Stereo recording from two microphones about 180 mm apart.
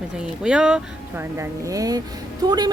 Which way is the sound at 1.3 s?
15° right (ahead or behind).